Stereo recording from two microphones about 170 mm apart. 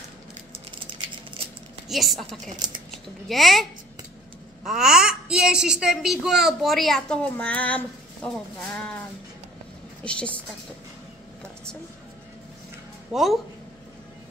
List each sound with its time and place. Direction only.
1.9 s a child's voice: centre (ahead or behind)
4.6 s a child's voice: 5° right (ahead or behind)
10.0 s a woman's voice: 5° left (ahead or behind)
13.1 s a child's voice: centre (ahead or behind)